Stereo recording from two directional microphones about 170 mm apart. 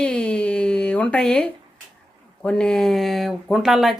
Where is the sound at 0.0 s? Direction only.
5° left (ahead or behind).